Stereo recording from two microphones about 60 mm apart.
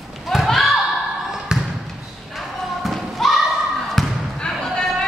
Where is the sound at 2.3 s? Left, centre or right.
Centre.